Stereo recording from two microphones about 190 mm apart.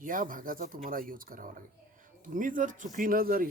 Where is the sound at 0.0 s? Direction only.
45° right (ahead or behind).